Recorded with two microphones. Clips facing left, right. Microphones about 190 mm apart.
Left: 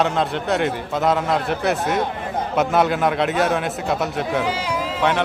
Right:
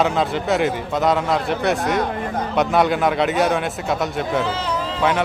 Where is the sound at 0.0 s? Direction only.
Centre (ahead or behind).